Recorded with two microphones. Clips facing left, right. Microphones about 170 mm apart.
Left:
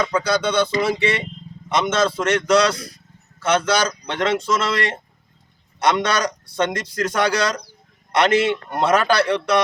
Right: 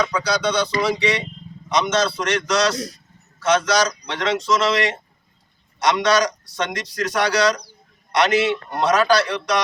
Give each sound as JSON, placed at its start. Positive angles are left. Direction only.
{"t": 0.2, "sound": "a man's voice", "side_deg": 55}